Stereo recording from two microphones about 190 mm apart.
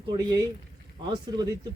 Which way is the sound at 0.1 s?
25° right (ahead or behind).